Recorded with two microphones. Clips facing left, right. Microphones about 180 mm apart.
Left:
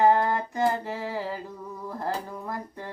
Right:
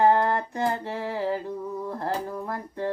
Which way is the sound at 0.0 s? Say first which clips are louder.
Right 1 dB; 15° left (ahead or behind).